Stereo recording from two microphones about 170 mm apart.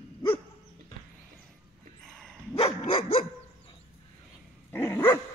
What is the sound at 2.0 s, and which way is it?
Dog, centre (ahead or behind).